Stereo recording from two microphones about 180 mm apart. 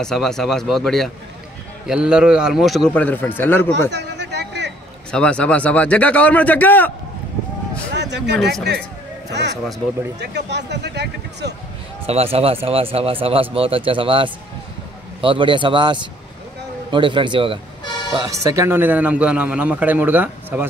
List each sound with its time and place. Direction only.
0.0 s a man's voice: centre (ahead or behind)
3.9 s a sound: 70° right (ahead or behind)
5.1 s a man's voice: 5° left (ahead or behind)
7.9 s a sound: 70° right (ahead or behind)
9.3 s speech: 70° right (ahead or behind)
12.1 s a man's voice: 35° right (ahead or behind); by 20.6 s 10° right (ahead or behind)